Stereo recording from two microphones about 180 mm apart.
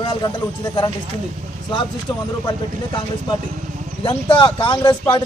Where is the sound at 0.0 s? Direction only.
25° left (ahead or behind).